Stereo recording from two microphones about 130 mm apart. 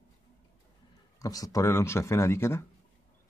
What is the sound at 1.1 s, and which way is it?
Speech, 25° left (ahead or behind).